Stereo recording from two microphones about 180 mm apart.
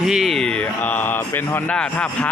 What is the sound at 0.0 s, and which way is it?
Speech, centre (ahead or behind).